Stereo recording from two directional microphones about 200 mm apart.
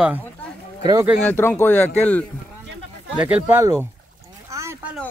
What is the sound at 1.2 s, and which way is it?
Speech, 10° left (ahead or behind).